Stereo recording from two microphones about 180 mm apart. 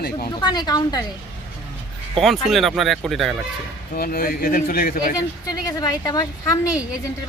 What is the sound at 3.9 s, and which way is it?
Speech, 55° left (ahead or behind).